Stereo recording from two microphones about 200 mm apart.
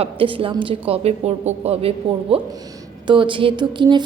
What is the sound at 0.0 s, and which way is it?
A woman's voice, 25° right (ahead or behind).